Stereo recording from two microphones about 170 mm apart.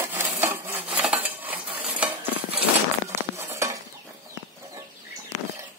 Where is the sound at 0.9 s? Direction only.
10° right (ahead or behind).